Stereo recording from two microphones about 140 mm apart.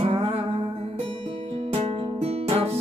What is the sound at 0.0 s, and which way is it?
Music, 45° right (ahead or behind).